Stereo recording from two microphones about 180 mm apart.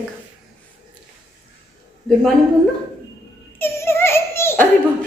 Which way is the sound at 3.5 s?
15° left (ahead or behind).